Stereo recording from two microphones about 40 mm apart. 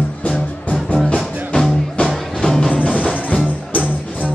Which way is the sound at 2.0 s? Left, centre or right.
Left.